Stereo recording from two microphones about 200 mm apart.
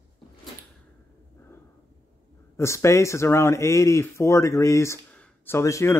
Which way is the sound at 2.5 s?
15° left (ahead or behind).